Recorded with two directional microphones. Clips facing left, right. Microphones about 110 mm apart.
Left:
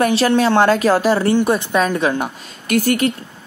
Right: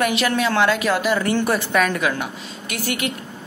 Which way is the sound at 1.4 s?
20° left (ahead or behind).